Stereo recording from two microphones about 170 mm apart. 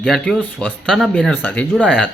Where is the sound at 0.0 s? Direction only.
Centre (ahead or behind).